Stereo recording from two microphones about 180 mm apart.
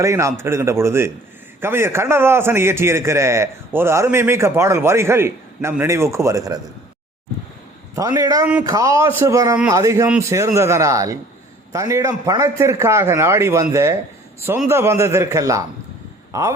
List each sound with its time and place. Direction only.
0.0 s a man's voice: 15° right (ahead or behind)
7.9 s a man's voice: 20° right (ahead or behind)